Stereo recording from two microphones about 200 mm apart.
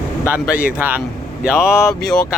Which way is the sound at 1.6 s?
15° left (ahead or behind).